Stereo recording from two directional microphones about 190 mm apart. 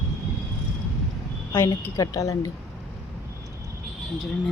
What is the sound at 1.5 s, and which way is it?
Speech, 15° left (ahead or behind).